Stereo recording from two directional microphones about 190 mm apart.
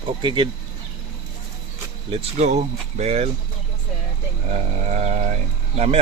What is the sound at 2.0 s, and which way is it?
Speech, 30° right (ahead or behind).